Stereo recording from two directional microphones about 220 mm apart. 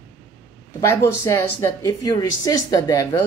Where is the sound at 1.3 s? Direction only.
15° left (ahead or behind).